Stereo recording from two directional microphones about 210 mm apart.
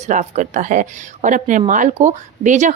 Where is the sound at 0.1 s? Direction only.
35° right (ahead or behind).